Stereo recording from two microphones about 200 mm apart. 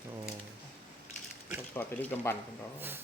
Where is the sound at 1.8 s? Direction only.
10° left (ahead or behind).